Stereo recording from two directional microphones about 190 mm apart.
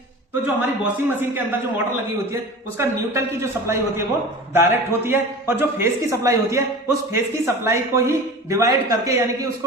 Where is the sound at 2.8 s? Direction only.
15° right (ahead or behind).